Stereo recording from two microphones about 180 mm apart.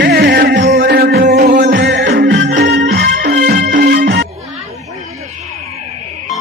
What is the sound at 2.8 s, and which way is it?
Music, 60° right (ahead or behind).